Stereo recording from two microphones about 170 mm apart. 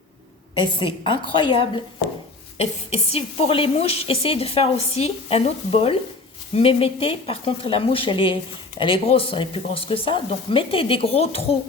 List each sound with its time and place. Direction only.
0.6 s a woman's voice: 30° left (ahead or behind)